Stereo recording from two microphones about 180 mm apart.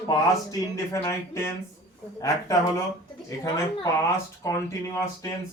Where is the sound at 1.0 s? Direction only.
15° left (ahead or behind).